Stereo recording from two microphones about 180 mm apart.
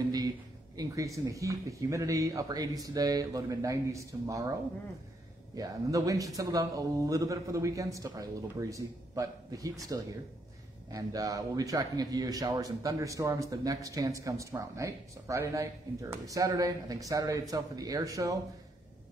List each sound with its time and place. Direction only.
0.7 s speech: 15° right (ahead or behind)
5.6 s a man's voice: 20° right (ahead or behind)